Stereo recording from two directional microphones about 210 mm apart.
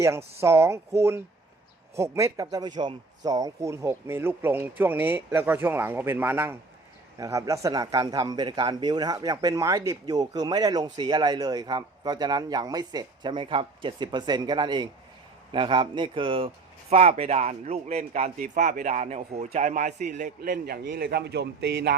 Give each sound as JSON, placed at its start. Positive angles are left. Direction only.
{"t": 0.3, "sound": "a man's voice", "side_deg": -10}